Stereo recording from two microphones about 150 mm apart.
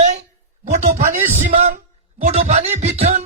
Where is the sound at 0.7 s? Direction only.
50° right (ahead or behind).